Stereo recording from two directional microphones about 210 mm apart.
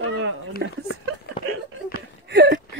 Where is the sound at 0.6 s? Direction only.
55° right (ahead or behind).